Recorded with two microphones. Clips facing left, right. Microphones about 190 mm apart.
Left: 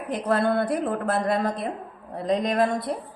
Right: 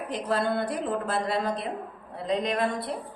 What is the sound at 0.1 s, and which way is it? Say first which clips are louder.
A woman's voice: left 5 dB; 55° left (ahead or behind).